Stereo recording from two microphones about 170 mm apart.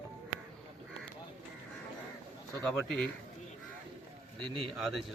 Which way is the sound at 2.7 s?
Centre (ahead or behind).